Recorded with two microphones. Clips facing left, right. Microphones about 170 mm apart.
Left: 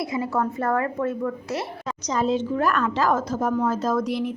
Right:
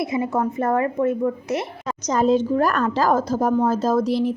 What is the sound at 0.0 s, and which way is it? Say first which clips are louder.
A woman's voice: right 3 dB; 20° right (ahead or behind).